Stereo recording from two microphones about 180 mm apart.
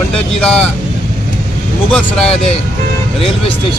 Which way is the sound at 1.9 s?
5° left (ahead or behind).